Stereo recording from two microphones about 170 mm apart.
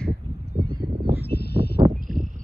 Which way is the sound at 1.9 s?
55° right (ahead or behind).